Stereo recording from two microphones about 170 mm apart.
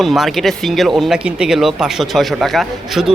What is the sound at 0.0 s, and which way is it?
Speech, centre (ahead or behind).